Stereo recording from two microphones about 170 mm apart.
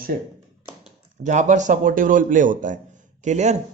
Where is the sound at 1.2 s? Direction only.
45° right (ahead or behind).